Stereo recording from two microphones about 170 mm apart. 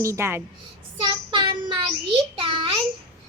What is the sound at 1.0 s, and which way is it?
Child singing, 30° right (ahead or behind).